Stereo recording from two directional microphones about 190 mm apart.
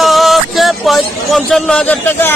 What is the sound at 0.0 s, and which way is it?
Speech, centre (ahead or behind).